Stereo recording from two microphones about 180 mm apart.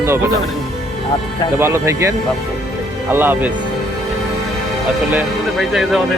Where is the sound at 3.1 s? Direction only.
10° right (ahead or behind).